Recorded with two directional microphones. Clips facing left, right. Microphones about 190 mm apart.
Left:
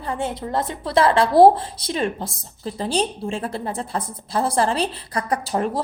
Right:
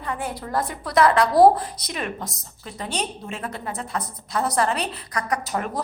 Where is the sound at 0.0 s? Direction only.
30° left (ahead or behind).